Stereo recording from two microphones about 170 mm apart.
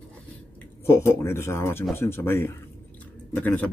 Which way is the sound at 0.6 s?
15° left (ahead or behind).